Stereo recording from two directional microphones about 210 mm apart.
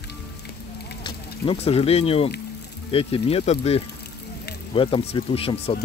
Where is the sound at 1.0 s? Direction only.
25° left (ahead or behind).